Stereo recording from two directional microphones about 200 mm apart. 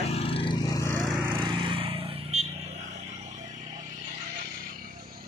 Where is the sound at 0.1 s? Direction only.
30° left (ahead or behind).